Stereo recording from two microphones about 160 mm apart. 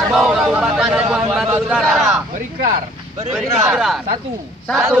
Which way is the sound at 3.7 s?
5° right (ahead or behind).